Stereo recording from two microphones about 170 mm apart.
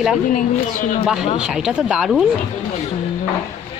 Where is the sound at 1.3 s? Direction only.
5° right (ahead or behind).